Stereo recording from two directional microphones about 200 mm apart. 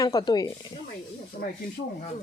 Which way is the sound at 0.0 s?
20° left (ahead or behind).